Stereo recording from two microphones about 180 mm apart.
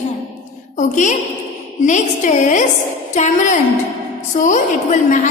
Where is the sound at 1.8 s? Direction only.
40° left (ahead or behind).